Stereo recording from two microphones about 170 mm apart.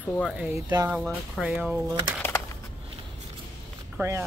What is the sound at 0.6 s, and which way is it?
Speech, 15° right (ahead or behind).